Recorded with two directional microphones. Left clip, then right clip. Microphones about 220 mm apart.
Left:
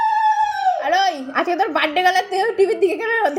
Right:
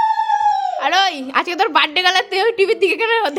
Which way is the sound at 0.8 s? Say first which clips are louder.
Right 2 dB; 15° right (ahead or behind).